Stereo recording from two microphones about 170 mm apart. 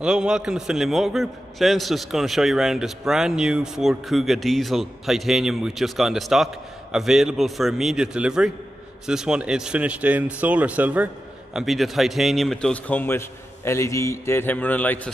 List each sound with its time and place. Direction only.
0.0 s a man's voice: 5° right (ahead or behind)